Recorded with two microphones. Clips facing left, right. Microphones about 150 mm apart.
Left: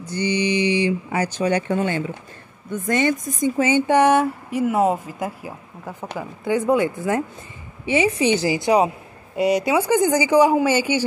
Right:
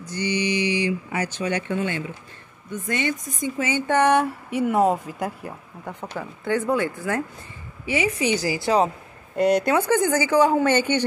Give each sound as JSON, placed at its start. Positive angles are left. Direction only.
{"t": 0.1, "sound": "a woman's voice", "side_deg": 30}
{"t": 3.5, "sound": "speech", "side_deg": 25}
{"t": 3.9, "sound": "a woman's voice", "side_deg": 5}